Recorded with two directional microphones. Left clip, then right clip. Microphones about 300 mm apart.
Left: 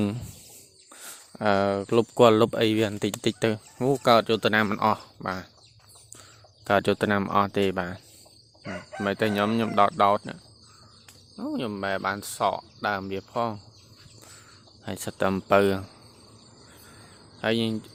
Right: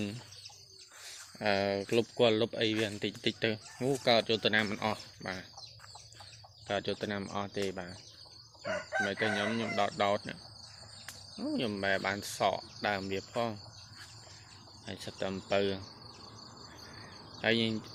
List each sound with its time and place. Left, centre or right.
1.4 s speech: left
6.7 s speech: left
9.0 s speech: left
11.3 s speech: centre
14.8 s speech: left
17.4 s speech: left